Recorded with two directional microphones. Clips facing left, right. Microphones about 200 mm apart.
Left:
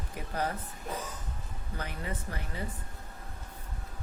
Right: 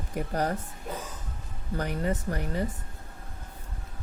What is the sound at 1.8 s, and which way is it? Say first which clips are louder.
Speech: right 9 dB; 45° right (ahead or behind).